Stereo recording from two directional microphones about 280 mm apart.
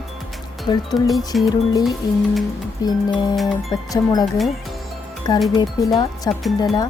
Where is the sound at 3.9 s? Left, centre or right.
Centre.